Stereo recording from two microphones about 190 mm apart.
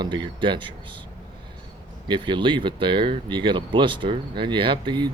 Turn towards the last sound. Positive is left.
turn(degrees=-25)  # may be behind; listen again after turning